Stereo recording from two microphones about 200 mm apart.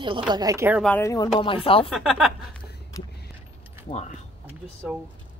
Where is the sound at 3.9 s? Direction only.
35° left (ahead or behind).